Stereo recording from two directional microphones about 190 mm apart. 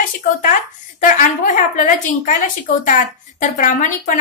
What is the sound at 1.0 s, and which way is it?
A woman's voice, 45° left (ahead or behind).